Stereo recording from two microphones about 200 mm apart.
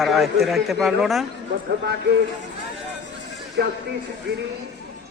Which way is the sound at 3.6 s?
55° right (ahead or behind).